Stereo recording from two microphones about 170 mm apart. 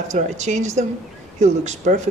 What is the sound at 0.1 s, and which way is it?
Speech, 45° right (ahead or behind).